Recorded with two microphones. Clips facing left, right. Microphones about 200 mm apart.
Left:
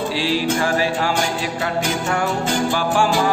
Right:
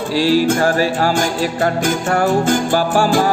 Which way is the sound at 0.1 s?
40° right (ahead or behind).